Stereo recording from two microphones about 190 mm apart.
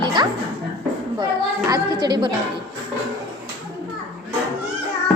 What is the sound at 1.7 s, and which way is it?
Speech, 20° right (ahead or behind).